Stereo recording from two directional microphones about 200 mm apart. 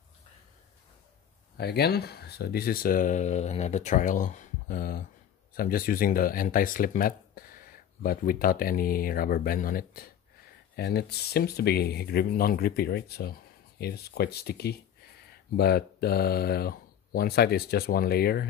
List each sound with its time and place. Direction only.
1.6 s speech: 55° left (ahead or behind)